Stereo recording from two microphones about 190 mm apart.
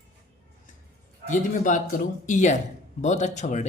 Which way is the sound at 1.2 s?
40° left (ahead or behind).